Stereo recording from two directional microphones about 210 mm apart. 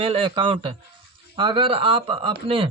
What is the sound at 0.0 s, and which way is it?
Speech, 25° right (ahead or behind).